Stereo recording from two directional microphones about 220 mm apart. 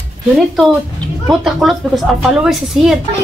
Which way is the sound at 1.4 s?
Centre (ahead or behind).